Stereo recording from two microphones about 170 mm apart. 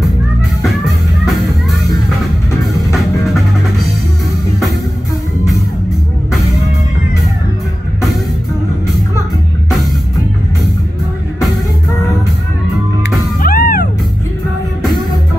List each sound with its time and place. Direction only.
1.2 s music: centre (ahead or behind)
13.4 s music: 60° left (ahead or behind)
14.8 s music: centre (ahead or behind)